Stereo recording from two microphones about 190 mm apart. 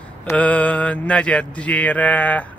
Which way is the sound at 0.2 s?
5° left (ahead or behind).